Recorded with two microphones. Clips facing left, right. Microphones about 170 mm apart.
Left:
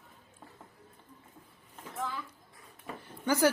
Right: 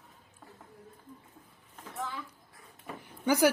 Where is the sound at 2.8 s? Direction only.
10° right (ahead or behind).